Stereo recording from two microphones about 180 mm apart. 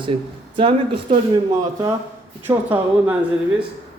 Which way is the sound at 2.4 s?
10° right (ahead or behind).